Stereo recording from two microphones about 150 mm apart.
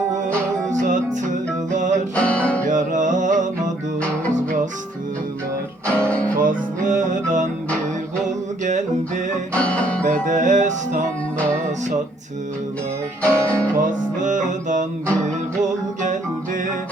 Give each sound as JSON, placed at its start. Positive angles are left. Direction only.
{"t": 0.7, "sound": "music", "side_deg": -55}
{"t": 2.1, "sound": "music", "side_deg": 10}
{"t": 2.6, "sound": "music", "side_deg": -55}
{"t": 5.8, "sound": "music", "side_deg": 10}
{"t": 6.4, "sound": "music", "side_deg": -60}
{"t": 8.6, "sound": "music", "side_deg": -55}
{"t": 9.6, "sound": "music", "side_deg": 10}
{"t": 10.0, "sound": "music", "side_deg": -60}
{"t": 13.2, "sound": "music", "side_deg": 10}
{"t": 14.2, "sound": "music", "side_deg": -55}